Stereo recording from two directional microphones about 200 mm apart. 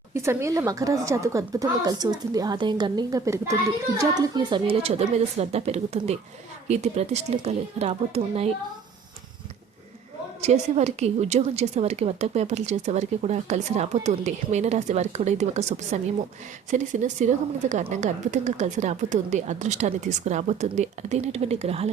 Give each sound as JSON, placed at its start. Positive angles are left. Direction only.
{"t": 0.1, "sound": "a woman's voice", "side_deg": -15}
{"t": 10.4, "sound": "a woman's voice", "side_deg": -35}